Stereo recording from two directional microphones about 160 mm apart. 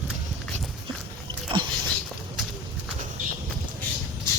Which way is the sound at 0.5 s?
5° left (ahead or behind).